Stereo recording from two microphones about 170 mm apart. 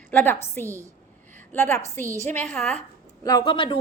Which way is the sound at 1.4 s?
10° left (ahead or behind).